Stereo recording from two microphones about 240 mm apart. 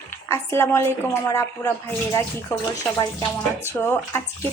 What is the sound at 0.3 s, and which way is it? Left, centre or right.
Speech, centre.